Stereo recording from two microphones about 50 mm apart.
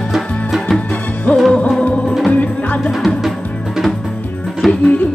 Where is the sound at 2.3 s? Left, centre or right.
Left.